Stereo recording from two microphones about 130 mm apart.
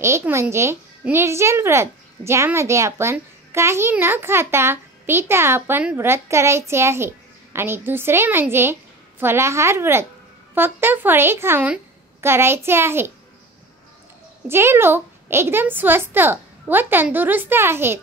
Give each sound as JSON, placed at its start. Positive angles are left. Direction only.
{"t": 0.0, "sound": "a child's voice", "side_deg": -20}
{"t": 14.5, "sound": "a woman's voice", "side_deg": -20}